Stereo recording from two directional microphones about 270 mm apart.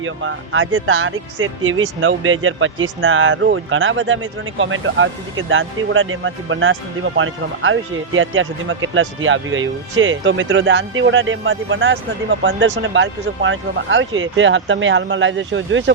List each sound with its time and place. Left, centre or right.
0.0 s speech: right